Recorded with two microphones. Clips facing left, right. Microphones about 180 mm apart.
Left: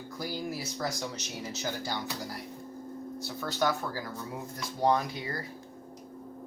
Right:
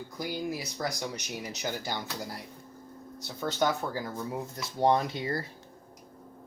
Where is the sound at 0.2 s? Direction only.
15° right (ahead or behind).